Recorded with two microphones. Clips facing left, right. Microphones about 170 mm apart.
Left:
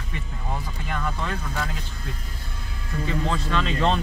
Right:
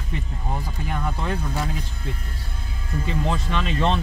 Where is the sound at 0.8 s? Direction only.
15° right (ahead or behind).